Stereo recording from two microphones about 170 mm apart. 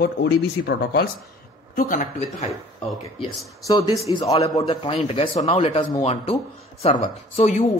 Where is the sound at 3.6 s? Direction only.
20° left (ahead or behind).